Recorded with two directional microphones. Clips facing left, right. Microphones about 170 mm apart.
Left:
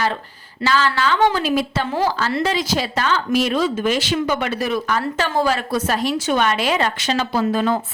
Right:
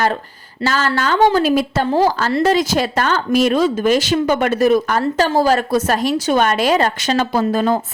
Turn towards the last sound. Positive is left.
turn(degrees=-40)  # may be behind; listen again after turning